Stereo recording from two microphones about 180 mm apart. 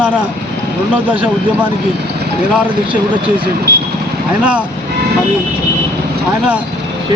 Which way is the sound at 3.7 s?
15° left (ahead or behind).